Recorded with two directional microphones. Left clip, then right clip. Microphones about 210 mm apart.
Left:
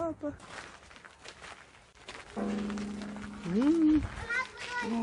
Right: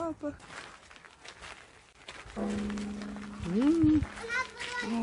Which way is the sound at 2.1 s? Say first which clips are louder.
Even; 10° right (ahead or behind).